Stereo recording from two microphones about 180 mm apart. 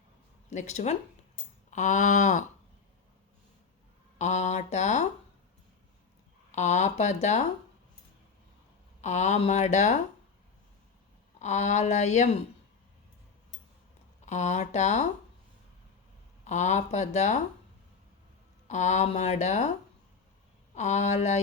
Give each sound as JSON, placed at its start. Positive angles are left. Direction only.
{"t": 0.5, "sound": "speech", "side_deg": 40}
{"t": 1.7, "sound": "a sound", "side_deg": 40}
{"t": 4.2, "sound": "speech", "side_deg": 40}
{"t": 6.5, "sound": "speech", "side_deg": 40}
{"t": 9.0, "sound": "speech", "side_deg": 40}
{"t": 11.3, "sound": "speech", "side_deg": 40}
{"t": 14.3, "sound": "speech", "side_deg": 40}
{"t": 16.4, "sound": "speech", "side_deg": 40}
{"t": 18.7, "sound": "speech", "side_deg": 40}
{"t": 20.7, "sound": "speech", "side_deg": 40}